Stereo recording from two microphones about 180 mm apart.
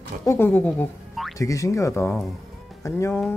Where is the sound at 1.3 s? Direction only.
20° left (ahead or behind).